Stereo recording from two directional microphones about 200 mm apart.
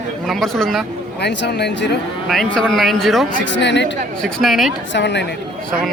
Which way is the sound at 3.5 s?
60° left (ahead or behind).